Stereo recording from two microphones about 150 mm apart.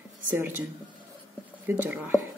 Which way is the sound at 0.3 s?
10° right (ahead or behind).